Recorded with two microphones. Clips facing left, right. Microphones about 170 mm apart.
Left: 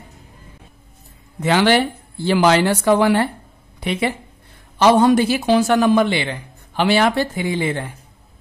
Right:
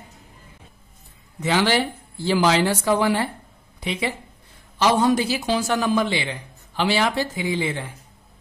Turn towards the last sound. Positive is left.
turn(degrees=55)  # may be behind; listen again after turning